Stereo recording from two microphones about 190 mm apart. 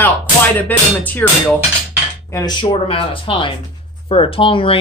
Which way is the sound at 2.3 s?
20° left (ahead or behind).